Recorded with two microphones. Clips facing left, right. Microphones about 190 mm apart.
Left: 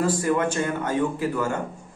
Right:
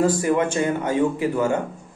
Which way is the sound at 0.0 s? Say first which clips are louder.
Right 3 dB; 15° right (ahead or behind).